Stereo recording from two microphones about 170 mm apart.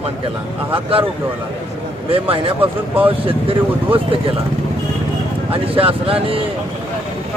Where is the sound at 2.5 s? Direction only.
10° right (ahead or behind).